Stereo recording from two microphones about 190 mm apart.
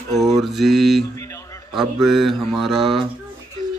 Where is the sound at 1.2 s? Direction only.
15° left (ahead or behind).